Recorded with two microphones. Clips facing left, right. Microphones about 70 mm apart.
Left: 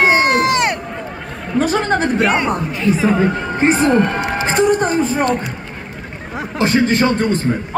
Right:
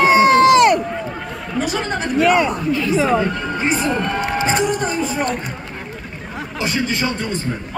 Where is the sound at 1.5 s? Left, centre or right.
Left.